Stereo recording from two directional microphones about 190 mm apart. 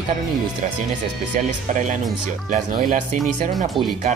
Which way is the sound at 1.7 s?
40° right (ahead or behind).